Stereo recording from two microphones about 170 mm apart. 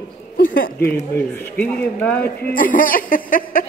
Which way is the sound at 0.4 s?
60° left (ahead or behind).